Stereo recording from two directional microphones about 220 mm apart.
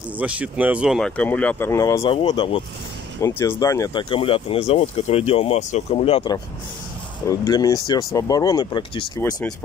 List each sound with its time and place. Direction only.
0.2 s speech: 5° right (ahead or behind); by 2.6 s 20° left (ahead or behind)
3.2 s speech: 10° left (ahead or behind)